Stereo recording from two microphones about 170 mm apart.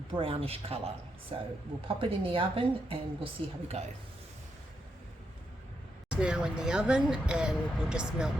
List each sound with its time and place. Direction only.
0.1 s a woman's voice: 35° right (ahead or behind)
6.1 s speech: 5° right (ahead or behind)